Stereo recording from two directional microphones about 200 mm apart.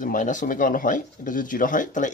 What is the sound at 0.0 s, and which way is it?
Speech, 40° left (ahead or behind).